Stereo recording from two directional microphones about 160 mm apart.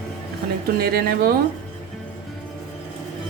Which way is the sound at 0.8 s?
75° right (ahead or behind).